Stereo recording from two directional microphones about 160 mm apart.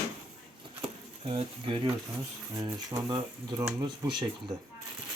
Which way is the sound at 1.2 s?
35° right (ahead or behind).